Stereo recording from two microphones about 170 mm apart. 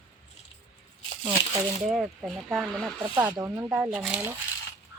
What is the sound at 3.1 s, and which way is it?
Speech, 20° right (ahead or behind).